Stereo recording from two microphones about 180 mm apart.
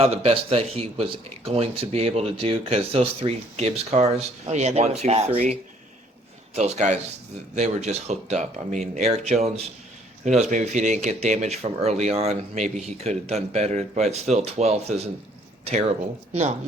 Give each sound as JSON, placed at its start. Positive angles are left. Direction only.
{"t": 0.0, "sound": "a man's voice", "side_deg": -35}
{"t": 10.5, "sound": "speech", "side_deg": -40}